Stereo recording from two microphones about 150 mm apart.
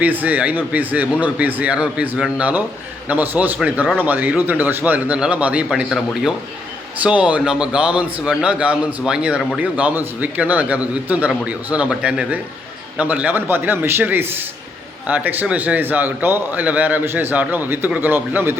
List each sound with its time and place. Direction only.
0.0 s a man's voice: 10° right (ahead or behind)